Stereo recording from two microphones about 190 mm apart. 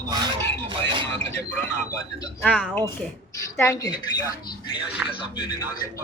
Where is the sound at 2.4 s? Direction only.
5° left (ahead or behind).